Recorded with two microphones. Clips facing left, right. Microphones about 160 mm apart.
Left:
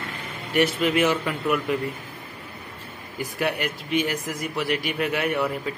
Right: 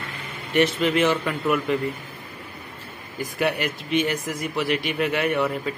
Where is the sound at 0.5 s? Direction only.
5° left (ahead or behind).